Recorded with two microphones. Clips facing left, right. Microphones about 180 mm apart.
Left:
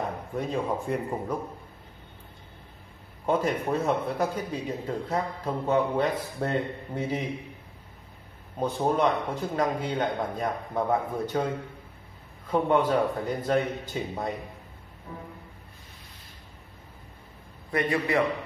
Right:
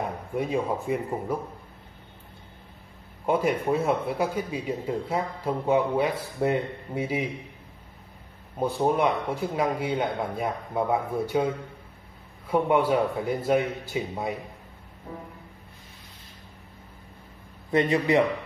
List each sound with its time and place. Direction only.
0.4 s a man's voice: 5° right (ahead or behind)
3.3 s a man's voice: 10° right (ahead or behind)
8.5 s a man's voice: 10° right (ahead or behind)
12.4 s a man's voice: 10° right (ahead or behind)
15.1 s a man's voice: 30° right (ahead or behind)
17.6 s a man's voice: 20° right (ahead or behind)